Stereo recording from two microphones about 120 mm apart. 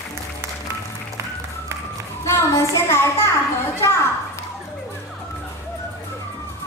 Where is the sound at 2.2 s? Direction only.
25° left (ahead or behind).